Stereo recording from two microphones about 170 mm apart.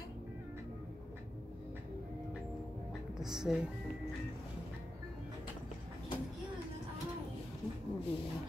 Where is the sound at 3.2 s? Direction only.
5° right (ahead or behind).